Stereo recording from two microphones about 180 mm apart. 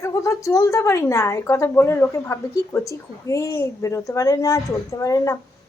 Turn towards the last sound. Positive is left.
turn(degrees=15)  # may be behind; listen again after turning